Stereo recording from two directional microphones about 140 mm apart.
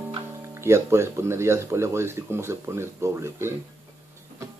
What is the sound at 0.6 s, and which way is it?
Speech, 20° right (ahead or behind).